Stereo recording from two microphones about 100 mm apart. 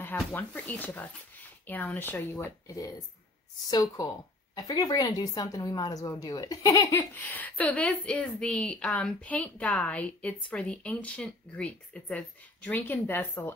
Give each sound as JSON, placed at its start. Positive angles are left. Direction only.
{"t": 0.3, "sound": "a woman's voice", "side_deg": 15}
{"t": 2.7, "sound": "a woman's voice", "side_deg": 35}
{"t": 7.2, "sound": "a woman's voice", "side_deg": 15}